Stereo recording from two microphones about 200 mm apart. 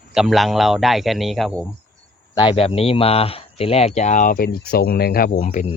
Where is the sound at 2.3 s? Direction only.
25° left (ahead or behind).